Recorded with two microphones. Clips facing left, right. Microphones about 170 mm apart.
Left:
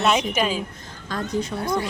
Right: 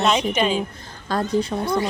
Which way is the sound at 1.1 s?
35° right (ahead or behind).